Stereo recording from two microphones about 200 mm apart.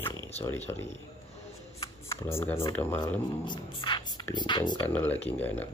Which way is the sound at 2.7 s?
10° left (ahead or behind).